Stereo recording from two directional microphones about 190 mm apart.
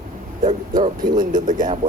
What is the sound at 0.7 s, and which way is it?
Speech, 20° right (ahead or behind).